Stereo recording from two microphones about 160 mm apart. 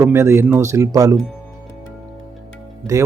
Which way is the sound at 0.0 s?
15° right (ahead or behind).